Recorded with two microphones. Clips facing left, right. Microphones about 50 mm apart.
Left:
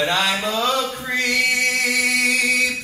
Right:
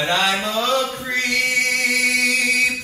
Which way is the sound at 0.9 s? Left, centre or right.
Centre.